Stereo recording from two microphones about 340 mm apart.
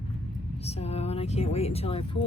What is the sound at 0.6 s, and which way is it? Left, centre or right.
Speech, centre.